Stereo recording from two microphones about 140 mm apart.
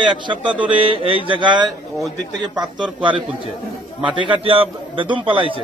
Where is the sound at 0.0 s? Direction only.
35° right (ahead or behind).